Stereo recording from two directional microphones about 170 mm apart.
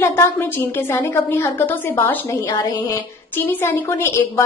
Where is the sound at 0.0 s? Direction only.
15° left (ahead or behind).